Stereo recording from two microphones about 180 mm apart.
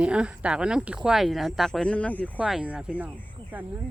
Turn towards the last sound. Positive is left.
turn(degrees=-5)  # may be behind; listen again after turning